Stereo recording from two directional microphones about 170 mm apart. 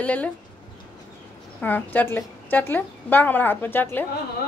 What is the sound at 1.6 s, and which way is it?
A woman's voice, 10° left (ahead or behind).